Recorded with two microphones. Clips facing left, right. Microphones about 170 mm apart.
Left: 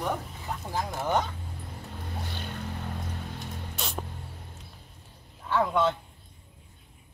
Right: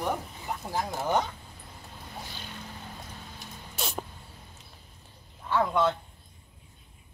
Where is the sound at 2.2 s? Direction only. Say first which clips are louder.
Left 6 dB; 60° left (ahead or behind).